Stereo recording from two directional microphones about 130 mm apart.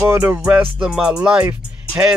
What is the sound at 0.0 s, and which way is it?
Speech, 20° right (ahead or behind).